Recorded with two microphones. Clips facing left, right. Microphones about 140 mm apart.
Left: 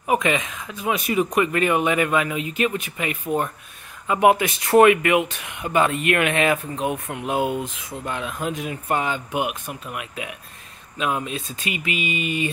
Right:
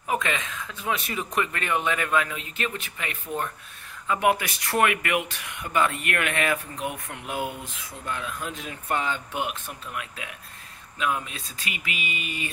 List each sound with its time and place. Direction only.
0.0 s speech: 15° left (ahead or behind)